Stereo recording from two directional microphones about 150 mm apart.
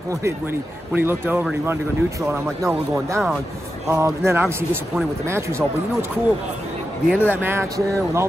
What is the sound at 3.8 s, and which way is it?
Speech, 20° right (ahead or behind).